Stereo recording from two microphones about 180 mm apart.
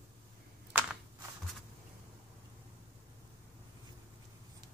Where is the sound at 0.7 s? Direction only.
10° right (ahead or behind).